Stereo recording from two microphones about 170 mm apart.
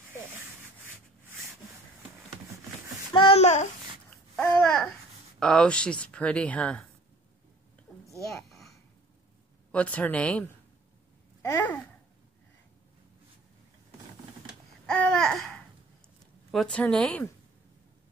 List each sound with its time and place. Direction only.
3.1 s a sound: 30° left (ahead or behind)
4.4 s babbling: 5° left (ahead or behind)
5.4 s speech: 5° left (ahead or behind)
8.5 s a sound: centre (ahead or behind)
9.7 s speech: 10° left (ahead or behind)
11.4 s babbling: 15° left (ahead or behind)
14.9 s babbling: 5° left (ahead or behind)
16.5 s speech: 5° left (ahead or behind)